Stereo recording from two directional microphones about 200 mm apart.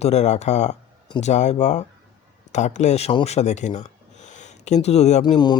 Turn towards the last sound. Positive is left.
turn(degrees=20)  # may be behind; listen again after turning